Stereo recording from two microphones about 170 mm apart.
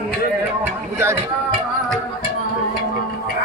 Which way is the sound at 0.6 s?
15° right (ahead or behind).